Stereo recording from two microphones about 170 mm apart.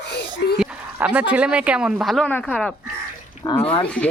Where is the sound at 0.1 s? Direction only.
70° left (ahead or behind).